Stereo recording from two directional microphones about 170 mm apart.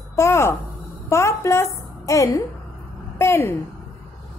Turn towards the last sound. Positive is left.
turn(degrees=15)  # may be behind; listen again after turning